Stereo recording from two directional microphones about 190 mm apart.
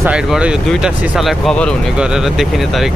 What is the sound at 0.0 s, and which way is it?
Speech, 5° right (ahead or behind).